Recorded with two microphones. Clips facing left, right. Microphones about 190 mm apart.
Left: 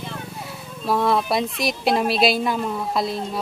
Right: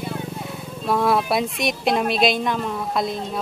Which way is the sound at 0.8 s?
Centre (ahead or behind).